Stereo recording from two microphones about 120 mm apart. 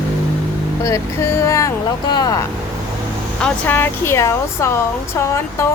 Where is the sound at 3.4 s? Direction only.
10° left (ahead or behind).